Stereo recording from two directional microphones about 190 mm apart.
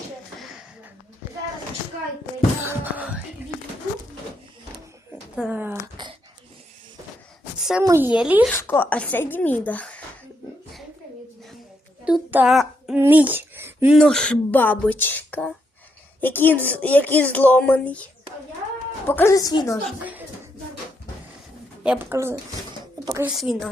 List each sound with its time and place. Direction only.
2.6 s music: 10° right (ahead or behind)
5.4 s speech: 10° right (ahead or behind)
6.0 s a sound: 25° right (ahead or behind)
7.6 s a sound: 5° right (ahead or behind)
7.9 s speech: 10° right (ahead or behind)
8.4 s speech: 10° left (ahead or behind)
12.0 s speech: 10° right (ahead or behind)
13.9 s speech: 5° left (ahead or behind)
20.0 s a sound: 10° right (ahead or behind)
21.8 s a woman's voice: 10° right (ahead or behind)
23.3 s a woman's voice: centre (ahead or behind)